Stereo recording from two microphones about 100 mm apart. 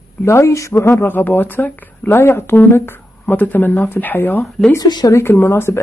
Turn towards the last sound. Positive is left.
turn(degrees=25)  # may be behind; listen again after turning